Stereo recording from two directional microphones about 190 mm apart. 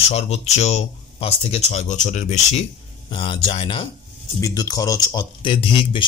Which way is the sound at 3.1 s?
25° left (ahead or behind).